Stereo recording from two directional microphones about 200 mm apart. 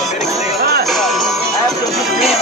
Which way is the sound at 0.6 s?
55° right (ahead or behind).